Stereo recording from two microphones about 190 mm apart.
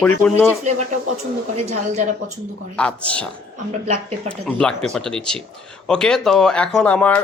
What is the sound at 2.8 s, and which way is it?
Speech, 5° left (ahead or behind).